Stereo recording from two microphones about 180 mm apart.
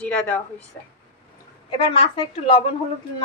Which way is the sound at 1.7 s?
30° left (ahead or behind).